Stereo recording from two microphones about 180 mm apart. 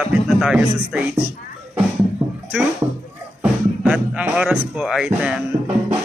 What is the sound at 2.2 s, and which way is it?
Music, 25° right (ahead or behind).